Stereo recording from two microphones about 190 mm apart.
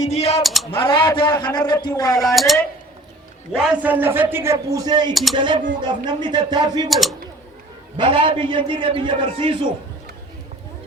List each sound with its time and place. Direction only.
0.0 s speech: 35° left (ahead or behind)
0.4 s speech: centre (ahead or behind)
0.7 s a man's voice: 25° left (ahead or behind)
2.3 s speech: centre (ahead or behind); by 5.1 s 20° right (ahead or behind)
5.1 s speech: centre (ahead or behind)
6.1 s a man's voice: 25° right (ahead or behind)
6.9 s speech: centre (ahead or behind)
7.9 s a man's voice: 25° right (ahead or behind)